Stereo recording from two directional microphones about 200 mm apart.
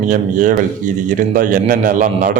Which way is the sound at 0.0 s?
40° right (ahead or behind).